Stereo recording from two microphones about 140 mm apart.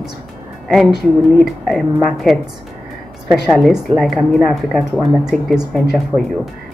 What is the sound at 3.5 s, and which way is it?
Speech, centre (ahead or behind).